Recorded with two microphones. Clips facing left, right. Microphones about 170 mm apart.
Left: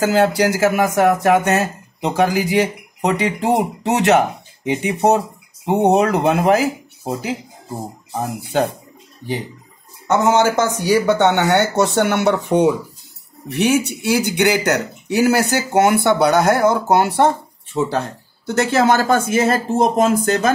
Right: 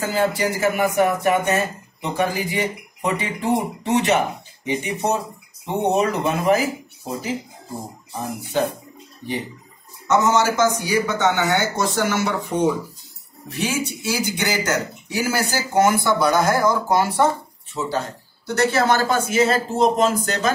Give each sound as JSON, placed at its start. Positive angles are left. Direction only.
{"t": 0.0, "sound": "speech", "side_deg": 80}
{"t": 10.0, "sound": "speech", "side_deg": 60}